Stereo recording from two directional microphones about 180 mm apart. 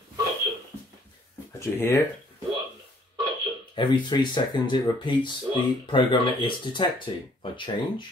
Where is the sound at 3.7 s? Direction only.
25° left (ahead or behind).